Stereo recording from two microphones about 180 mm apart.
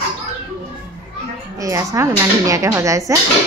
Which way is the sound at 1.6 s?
15° right (ahead or behind).